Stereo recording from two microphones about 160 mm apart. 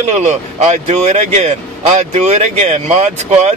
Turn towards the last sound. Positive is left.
turn(degrees=-45)  # may be behind; listen again after turning